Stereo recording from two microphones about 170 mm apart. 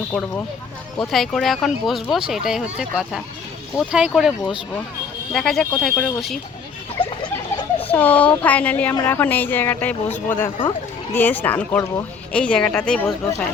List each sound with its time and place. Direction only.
0.1 s a woman's voice: 5° left (ahead or behind)
7.0 s rodents: 30° left (ahead or behind)
7.9 s a woman's voice: 10° left (ahead or behind)